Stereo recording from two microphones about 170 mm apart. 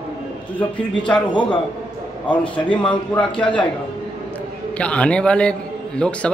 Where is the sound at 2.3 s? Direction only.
30° left (ahead or behind).